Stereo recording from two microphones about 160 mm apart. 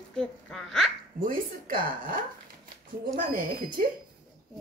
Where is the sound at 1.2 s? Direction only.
60° right (ahead or behind).